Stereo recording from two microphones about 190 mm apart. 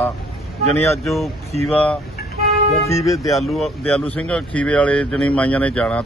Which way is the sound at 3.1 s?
Centre (ahead or behind).